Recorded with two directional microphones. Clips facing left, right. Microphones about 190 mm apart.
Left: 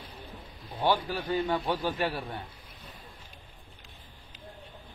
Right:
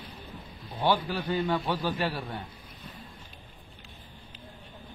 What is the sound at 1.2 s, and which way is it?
A man's voice, 25° left (ahead or behind).